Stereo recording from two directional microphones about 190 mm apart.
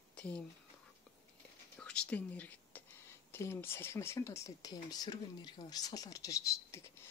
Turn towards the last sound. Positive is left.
turn(degrees=15)  # may be behind; listen again after turning